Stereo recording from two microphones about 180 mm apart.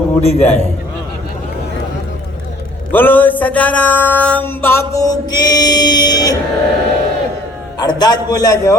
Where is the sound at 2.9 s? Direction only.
10° left (ahead or behind).